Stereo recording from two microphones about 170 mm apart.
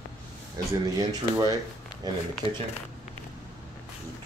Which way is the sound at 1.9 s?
25° left (ahead or behind).